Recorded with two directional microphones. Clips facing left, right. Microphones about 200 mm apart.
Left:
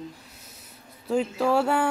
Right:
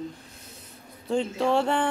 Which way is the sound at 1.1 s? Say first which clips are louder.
Left 1 dB; 5° left (ahead or behind).